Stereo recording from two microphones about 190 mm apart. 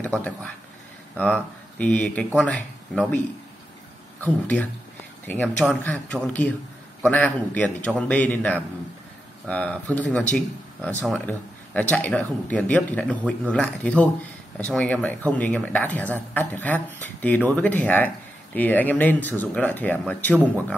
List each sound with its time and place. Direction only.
1.1 s speech: 5° left (ahead or behind)
4.2 s speech: 10° left (ahead or behind)